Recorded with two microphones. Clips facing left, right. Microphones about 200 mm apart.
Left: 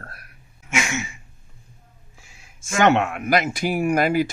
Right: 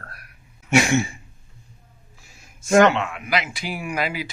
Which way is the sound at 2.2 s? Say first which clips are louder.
Right 5 dB; 40° right (ahead or behind).